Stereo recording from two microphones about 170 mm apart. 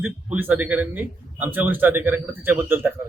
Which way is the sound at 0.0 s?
10° right (ahead or behind).